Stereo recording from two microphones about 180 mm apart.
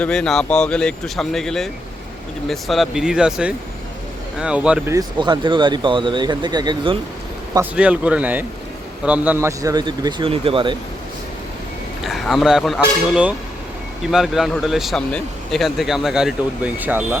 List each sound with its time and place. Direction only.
0.0 s speech: 5° left (ahead or behind)
4.9 s speech: 25° right (ahead or behind)
7.5 s speech: 10° right (ahead or behind); by 10.8 s 30° right (ahead or behind)
12.0 s speech: centre (ahead or behind)